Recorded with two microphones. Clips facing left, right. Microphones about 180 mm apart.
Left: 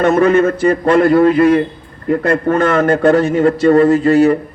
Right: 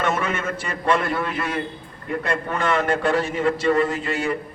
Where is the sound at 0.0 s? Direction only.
40° left (ahead or behind).